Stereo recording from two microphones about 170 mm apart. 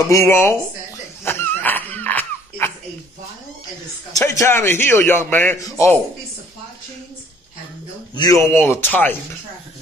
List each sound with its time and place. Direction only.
0.0 s a man's voice: 15° left (ahead or behind)
1.2 s wheeze: 10° left (ahead or behind)
4.1 s a man's voice: 20° left (ahead or behind)
8.1 s a man's voice: 20° left (ahead or behind)